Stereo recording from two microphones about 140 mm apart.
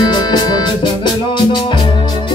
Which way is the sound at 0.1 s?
30° left (ahead or behind).